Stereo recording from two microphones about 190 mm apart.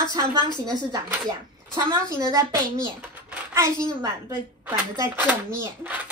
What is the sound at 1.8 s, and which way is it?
A woman's voice, 20° right (ahead or behind).